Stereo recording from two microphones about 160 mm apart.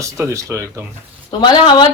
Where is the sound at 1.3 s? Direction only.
25° left (ahead or behind).